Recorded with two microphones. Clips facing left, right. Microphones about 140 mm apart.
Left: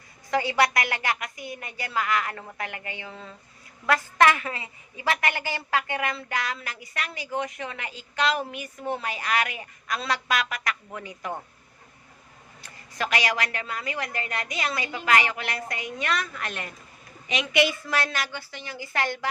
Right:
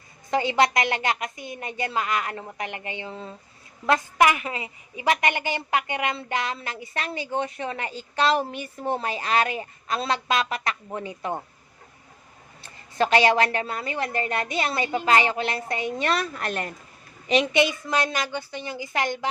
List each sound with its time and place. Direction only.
0.3 s a woman's voice: 25° right (ahead or behind)
12.6 s a woman's voice: 30° right (ahead or behind)